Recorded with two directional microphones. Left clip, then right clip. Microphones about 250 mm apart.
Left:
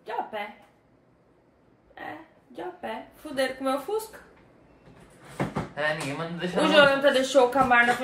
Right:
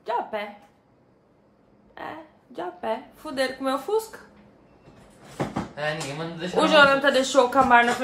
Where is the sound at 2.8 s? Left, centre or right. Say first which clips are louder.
Right 6 dB; centre.